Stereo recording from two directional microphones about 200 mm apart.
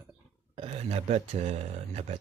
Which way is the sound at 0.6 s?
30° right (ahead or behind).